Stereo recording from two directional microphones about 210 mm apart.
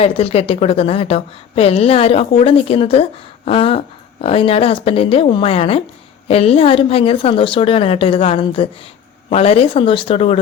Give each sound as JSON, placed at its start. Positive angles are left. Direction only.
{"t": 0.0, "sound": "a woman's voice", "side_deg": 30}